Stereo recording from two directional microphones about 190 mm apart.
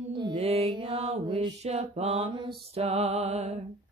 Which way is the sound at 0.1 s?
25° right (ahead or behind).